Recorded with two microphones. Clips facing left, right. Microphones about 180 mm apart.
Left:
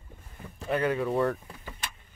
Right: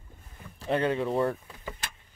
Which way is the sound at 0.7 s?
25° right (ahead or behind).